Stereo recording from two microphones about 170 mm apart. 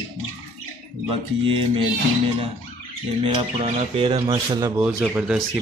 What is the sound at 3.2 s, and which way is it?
Speech, 35° right (ahead or behind).